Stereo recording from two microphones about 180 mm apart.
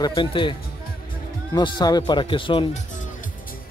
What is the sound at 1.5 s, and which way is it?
Speech, 20° left (ahead or behind).